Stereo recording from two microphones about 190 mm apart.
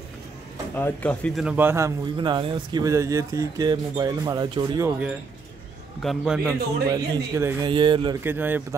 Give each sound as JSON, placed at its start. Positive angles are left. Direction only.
{"t": 0.7, "sound": "speech", "side_deg": 10}
{"t": 1.4, "sound": "a man's voice", "side_deg": -10}
{"t": 6.0, "sound": "a man's voice", "side_deg": -5}
{"t": 6.9, "sound": "a man's voice", "side_deg": -15}
{"t": 8.2, "sound": "speech", "side_deg": -10}